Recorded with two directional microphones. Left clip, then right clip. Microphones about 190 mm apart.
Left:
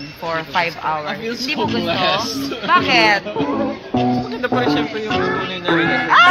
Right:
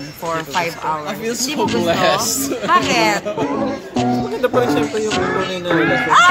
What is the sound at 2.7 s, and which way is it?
Speech, centre (ahead or behind).